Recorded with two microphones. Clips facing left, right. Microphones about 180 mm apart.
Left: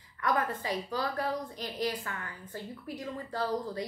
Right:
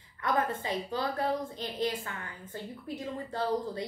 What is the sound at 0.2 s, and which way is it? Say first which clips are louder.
A woman's voice: right 1 dB; 25° right (ahead or behind).